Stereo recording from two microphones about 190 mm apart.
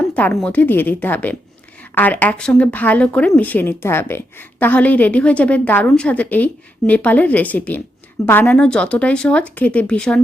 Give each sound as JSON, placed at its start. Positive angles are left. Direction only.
{"t": 0.2, "sound": "speech", "side_deg": 5}